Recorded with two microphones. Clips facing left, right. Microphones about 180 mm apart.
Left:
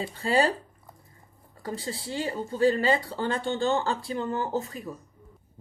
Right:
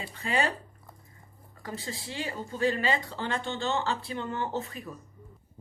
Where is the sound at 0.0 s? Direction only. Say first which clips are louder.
Left 5 dB; 35° left (ahead or behind).